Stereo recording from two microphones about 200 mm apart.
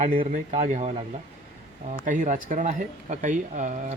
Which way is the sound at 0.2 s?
35° right (ahead or behind).